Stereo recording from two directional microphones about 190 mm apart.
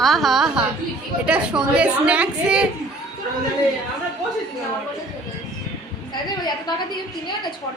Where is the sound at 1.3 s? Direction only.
5° right (ahead or behind).